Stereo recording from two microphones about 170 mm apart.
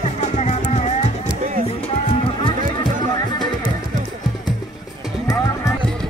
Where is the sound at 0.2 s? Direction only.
40° left (ahead or behind).